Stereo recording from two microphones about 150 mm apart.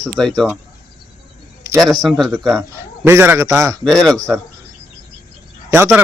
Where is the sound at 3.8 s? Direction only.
5° left (ahead or behind).